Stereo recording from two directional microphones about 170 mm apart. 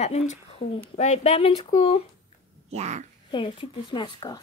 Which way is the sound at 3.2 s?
30° left (ahead or behind).